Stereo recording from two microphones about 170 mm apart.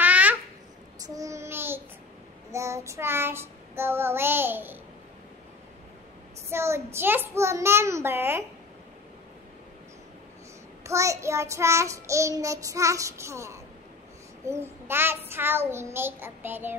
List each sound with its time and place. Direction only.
0.0 s babbling: 10° right (ahead or behind)
1.0 s child singing: 20° right (ahead or behind)
6.5 s child singing: 15° right (ahead or behind)
10.9 s child singing: 15° right (ahead or behind)